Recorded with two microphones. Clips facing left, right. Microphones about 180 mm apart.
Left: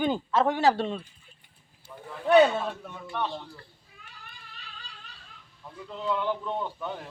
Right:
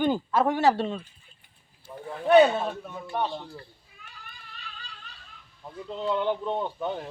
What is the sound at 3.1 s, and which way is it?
Speech, 40° right (ahead or behind).